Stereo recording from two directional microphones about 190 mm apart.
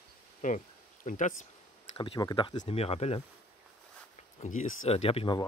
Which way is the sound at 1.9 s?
25° left (ahead or behind).